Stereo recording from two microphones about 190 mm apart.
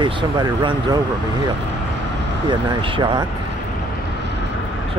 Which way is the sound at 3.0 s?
25° right (ahead or behind).